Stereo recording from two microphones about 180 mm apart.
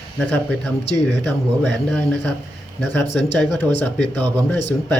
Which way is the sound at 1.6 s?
10° left (ahead or behind).